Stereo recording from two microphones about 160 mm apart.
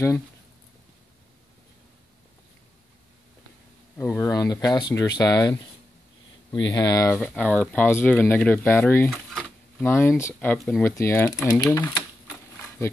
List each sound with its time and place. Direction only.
4.0 s speech: 20° left (ahead or behind)
7.2 s speech: 10° left (ahead or behind)